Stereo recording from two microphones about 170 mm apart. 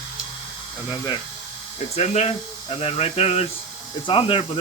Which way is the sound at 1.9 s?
40° left (ahead or behind).